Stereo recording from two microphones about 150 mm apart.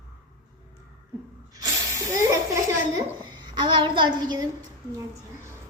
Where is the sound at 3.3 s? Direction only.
30° right (ahead or behind).